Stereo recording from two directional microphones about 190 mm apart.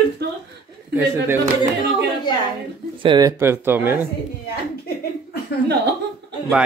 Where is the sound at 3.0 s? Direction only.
25° right (ahead or behind).